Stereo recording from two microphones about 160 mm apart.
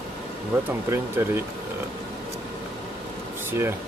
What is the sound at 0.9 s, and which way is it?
Speech, 15° right (ahead or behind).